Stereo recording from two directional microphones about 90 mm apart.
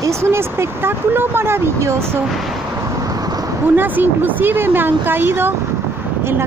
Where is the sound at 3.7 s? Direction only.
20° right (ahead or behind).